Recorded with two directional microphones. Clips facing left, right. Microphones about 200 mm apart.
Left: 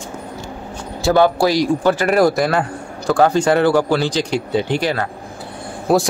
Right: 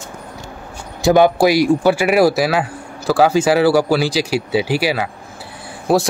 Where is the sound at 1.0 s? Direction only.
15° right (ahead or behind).